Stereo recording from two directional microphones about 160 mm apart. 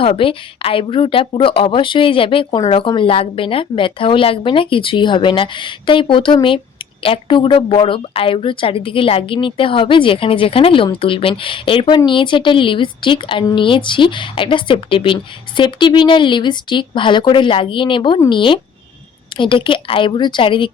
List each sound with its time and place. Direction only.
0.0 s speech: 35° left (ahead or behind)